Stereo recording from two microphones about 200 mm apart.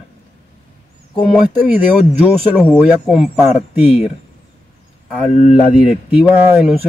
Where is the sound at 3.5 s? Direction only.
35° left (ahead or behind).